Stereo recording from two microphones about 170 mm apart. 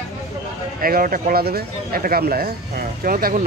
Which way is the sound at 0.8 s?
55° right (ahead or behind).